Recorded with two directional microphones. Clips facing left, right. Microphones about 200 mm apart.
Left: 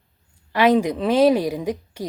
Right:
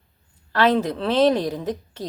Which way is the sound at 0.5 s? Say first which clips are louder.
Left 2 dB; 15° left (ahead or behind).